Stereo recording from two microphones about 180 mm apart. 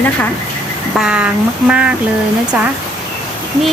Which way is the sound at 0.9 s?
5° right (ahead or behind).